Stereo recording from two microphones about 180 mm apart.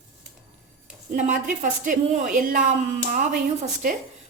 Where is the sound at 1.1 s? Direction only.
45° right (ahead or behind).